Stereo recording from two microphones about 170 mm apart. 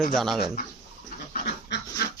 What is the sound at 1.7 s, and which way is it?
Dog, 90° left.